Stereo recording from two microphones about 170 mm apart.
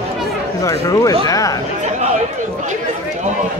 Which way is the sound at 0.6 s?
20° left (ahead or behind).